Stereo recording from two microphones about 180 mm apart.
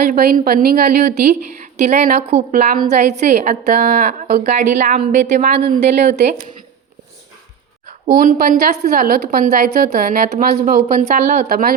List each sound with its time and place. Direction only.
0.1 s a woman's voice: 50° right (ahead or behind)
1.8 s a woman's voice: 45° right (ahead or behind)
7.9 s a woman's voice: 50° right (ahead or behind)